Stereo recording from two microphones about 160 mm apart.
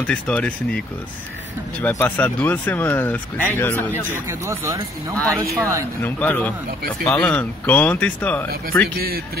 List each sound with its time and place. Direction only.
0.0 s speech: 10° left (ahead or behind)
4.1 s speech: 15° right (ahead or behind)
6.0 s speech: 10° left (ahead or behind)